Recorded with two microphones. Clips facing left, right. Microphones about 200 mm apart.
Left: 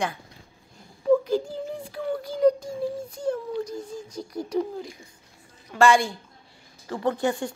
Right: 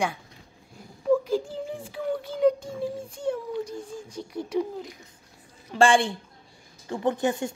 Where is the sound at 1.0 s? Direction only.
5° right (ahead or behind).